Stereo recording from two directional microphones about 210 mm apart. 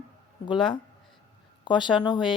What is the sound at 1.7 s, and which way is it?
Speech, 20° left (ahead or behind).